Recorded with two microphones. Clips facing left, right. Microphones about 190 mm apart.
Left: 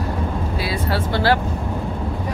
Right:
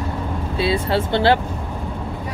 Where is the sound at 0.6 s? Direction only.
25° right (ahead or behind).